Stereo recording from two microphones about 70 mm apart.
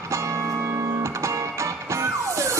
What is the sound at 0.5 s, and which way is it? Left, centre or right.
Music, right.